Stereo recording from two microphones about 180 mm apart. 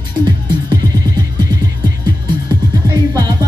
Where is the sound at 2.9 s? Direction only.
20° right (ahead or behind).